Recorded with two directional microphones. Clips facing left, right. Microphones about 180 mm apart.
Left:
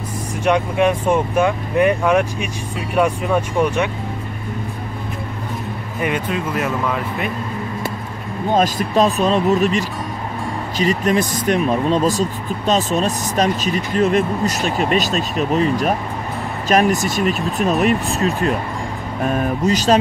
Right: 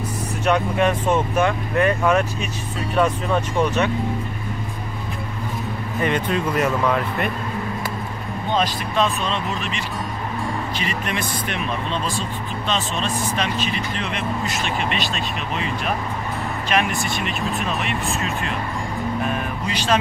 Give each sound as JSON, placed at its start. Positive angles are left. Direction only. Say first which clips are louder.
{"t": 0.5, "sound": "speech", "louder": "left 3 dB", "side_deg": 10}
{"t": 5.9, "sound": "speech", "louder": "even", "side_deg": 10}
{"t": 8.5, "sound": "speech", "louder": "left 6 dB", "side_deg": 45}